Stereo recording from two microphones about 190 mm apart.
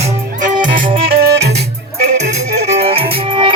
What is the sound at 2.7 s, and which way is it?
Music, 30° right (ahead or behind).